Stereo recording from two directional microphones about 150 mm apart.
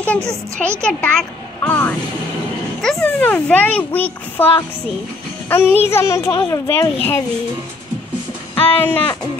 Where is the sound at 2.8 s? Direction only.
5° left (ahead or behind).